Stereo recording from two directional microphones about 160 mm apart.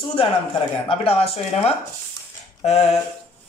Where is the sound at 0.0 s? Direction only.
35° left (ahead or behind).